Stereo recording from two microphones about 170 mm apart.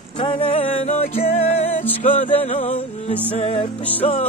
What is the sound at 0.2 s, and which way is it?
Music, 35° left (ahead or behind).